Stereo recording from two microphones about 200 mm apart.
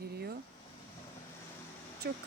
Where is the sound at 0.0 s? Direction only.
50° right (ahead or behind).